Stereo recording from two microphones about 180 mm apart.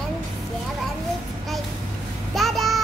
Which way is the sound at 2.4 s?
Centre (ahead or behind).